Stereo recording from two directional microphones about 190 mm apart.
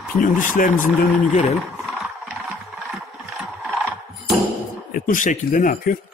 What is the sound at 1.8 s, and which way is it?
Engine, centre (ahead or behind).